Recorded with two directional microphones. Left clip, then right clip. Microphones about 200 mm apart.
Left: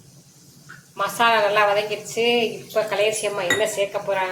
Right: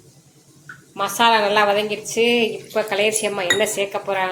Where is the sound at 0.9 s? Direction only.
30° right (ahead or behind).